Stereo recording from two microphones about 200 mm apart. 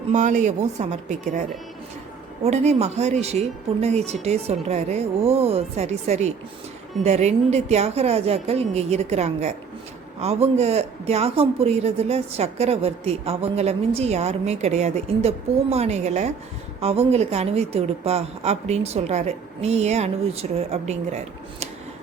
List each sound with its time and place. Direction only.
0.1 s speech: 35° right (ahead or behind)